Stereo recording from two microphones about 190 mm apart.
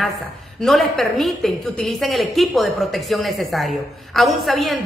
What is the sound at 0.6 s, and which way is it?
A woman's voice, centre (ahead or behind).